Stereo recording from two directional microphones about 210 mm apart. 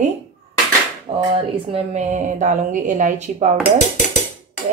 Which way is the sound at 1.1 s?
25° right (ahead or behind).